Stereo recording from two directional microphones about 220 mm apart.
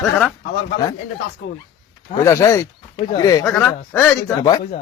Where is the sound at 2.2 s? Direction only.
15° left (ahead or behind).